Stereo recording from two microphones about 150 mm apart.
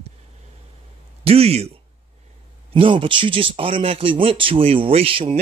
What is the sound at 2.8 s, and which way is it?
Speech, 35° right (ahead or behind).